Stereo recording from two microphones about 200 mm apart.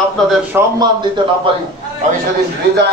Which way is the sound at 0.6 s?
10° right (ahead or behind).